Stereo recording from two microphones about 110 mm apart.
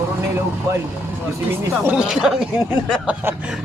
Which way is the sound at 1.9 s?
5° right (ahead or behind).